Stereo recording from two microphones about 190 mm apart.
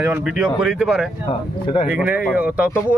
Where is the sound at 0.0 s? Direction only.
5° right (ahead or behind).